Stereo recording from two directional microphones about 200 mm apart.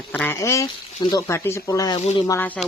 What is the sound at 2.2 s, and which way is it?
Speech, 10° left (ahead or behind).